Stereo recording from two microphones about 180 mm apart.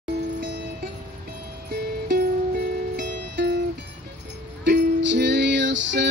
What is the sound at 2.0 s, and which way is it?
Music, 55° right (ahead or behind).